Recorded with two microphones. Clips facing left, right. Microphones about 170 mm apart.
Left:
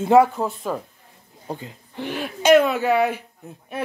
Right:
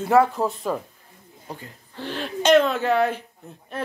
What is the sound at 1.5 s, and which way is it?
Speech, 20° left (ahead or behind).